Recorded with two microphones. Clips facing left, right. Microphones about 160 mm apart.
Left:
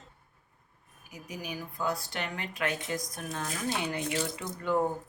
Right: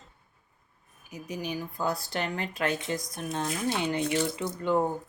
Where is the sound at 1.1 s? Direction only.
25° right (ahead or behind).